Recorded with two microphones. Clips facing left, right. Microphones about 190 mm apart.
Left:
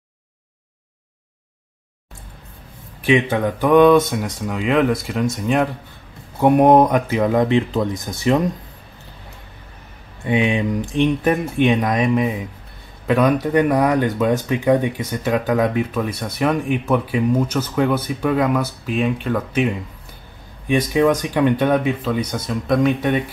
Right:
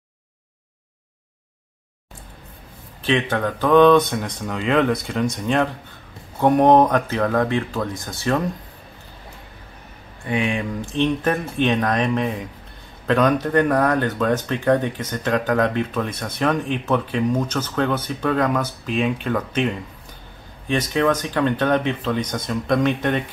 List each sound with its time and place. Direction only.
3.0 s speech: 10° left (ahead or behind)
10.2 s speech: 20° left (ahead or behind); by 23.2 s 5° left (ahead or behind)